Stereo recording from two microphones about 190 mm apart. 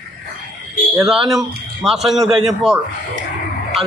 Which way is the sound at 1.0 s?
Centre (ahead or behind).